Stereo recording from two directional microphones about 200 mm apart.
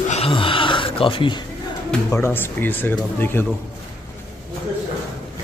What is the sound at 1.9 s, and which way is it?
Speech, 10° left (ahead or behind).